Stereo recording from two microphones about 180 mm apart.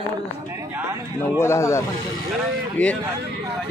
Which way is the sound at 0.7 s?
10° right (ahead or behind).